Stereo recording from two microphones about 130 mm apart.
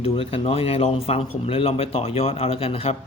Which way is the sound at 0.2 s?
45° left (ahead or behind).